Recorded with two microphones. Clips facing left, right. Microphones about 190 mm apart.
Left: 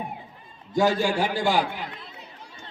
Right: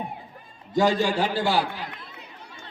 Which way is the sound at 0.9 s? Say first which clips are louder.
Right 1 dB; 10° left (ahead or behind).